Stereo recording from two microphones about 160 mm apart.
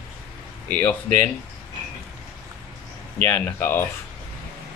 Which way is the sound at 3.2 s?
10° left (ahead or behind).